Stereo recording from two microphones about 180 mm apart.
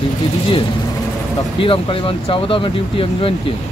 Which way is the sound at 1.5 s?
30° left (ahead or behind).